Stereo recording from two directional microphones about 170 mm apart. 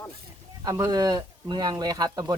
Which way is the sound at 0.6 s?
20° right (ahead or behind).